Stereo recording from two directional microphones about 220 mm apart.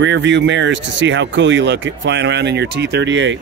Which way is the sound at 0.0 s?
55° right (ahead or behind).